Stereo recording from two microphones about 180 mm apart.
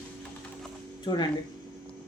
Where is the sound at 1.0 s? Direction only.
25° left (ahead or behind).